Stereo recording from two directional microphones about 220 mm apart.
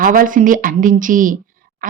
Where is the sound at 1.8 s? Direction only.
40° right (ahead or behind).